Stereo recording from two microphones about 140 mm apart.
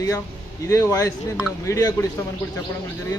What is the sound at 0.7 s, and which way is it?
A man's voice, 25° left (ahead or behind).